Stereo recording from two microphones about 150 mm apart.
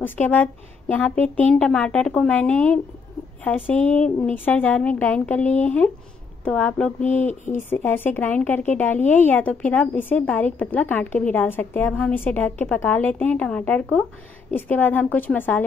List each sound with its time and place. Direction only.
0.0 s a woman's voice: 10° left (ahead or behind)
7.2 s speech: 55° left (ahead or behind)
7.7 s a woman's voice: 15° left (ahead or behind)